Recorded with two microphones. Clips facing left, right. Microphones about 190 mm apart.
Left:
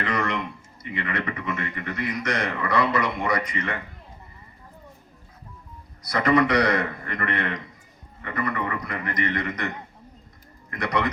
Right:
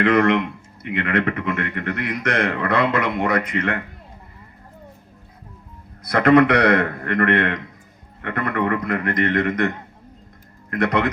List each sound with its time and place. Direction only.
0.0 s speech: 60° right (ahead or behind)
6.0 s speech: 55° right (ahead or behind)